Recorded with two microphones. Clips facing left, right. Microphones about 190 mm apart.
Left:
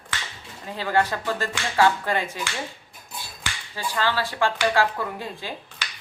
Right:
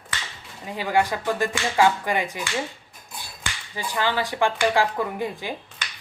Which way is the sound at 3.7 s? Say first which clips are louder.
Right 1 dB; 15° right (ahead or behind).